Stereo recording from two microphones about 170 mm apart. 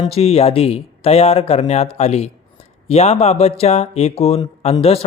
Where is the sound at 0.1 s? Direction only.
35° left (ahead or behind).